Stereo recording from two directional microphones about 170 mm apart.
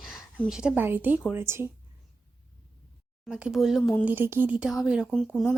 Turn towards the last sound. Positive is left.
turn(degrees=0)  # may be behind; listen again after turning